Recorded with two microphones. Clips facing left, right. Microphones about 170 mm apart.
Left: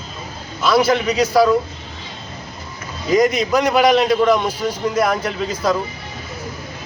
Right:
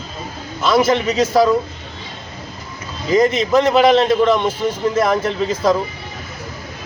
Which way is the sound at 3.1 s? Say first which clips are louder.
Right 2 dB; 15° left (ahead or behind).